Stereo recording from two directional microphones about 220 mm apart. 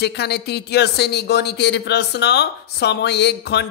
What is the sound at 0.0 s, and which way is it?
Speech, 50° left (ahead or behind).